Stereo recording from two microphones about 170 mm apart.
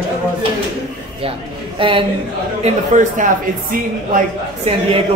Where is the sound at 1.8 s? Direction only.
30° right (ahead or behind).